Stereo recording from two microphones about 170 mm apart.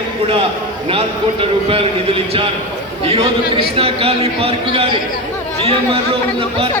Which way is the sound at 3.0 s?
35° right (ahead or behind).